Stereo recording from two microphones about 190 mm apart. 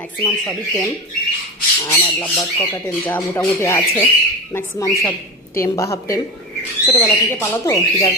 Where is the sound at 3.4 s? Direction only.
15° left (ahead or behind).